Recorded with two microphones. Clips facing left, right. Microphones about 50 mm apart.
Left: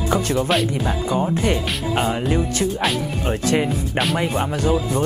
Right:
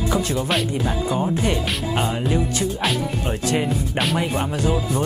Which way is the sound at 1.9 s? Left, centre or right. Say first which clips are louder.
Left 3 dB; centre.